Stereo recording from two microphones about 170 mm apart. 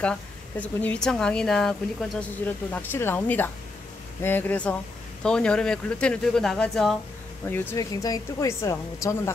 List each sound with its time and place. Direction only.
0.0 s speech: 5° left (ahead or behind)
7.4 s speech: 15° left (ahead or behind)